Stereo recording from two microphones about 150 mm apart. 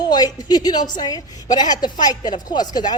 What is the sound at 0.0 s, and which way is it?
A woman's voice, 25° left (ahead or behind).